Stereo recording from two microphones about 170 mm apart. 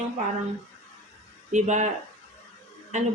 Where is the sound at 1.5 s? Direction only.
45° right (ahead or behind).